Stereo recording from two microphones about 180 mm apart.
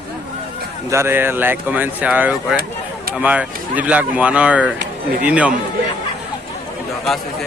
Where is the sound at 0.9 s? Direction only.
15° right (ahead or behind).